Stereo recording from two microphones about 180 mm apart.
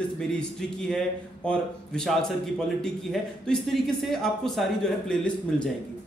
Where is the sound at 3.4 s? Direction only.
Centre (ahead or behind).